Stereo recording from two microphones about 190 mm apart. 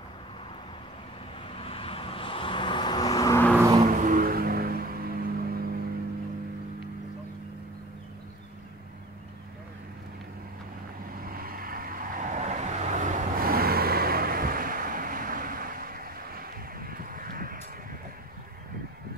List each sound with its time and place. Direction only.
1.5 s vehicle: 30° left (ahead or behind); by 3.5 s 15° left (ahead or behind)
3.5 s vehicle: 15° right (ahead or behind)
3.8 s vehicle: 45° right (ahead or behind)
11.2 s vehicle: 50° right (ahead or behind)